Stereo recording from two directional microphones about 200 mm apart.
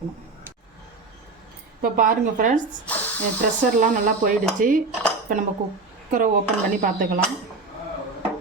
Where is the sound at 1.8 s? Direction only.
45° right (ahead or behind).